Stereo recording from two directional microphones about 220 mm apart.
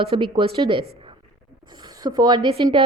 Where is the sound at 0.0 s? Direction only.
25° right (ahead or behind).